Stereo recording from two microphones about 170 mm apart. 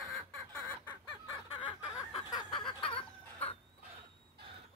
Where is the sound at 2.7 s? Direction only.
30° left (ahead or behind).